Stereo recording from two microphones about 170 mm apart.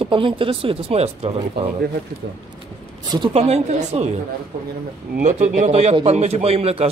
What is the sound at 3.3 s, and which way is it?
Speech, 40° right (ahead or behind).